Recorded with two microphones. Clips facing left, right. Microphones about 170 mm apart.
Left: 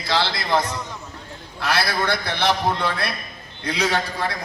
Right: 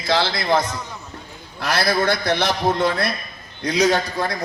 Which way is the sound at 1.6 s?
45° right (ahead or behind).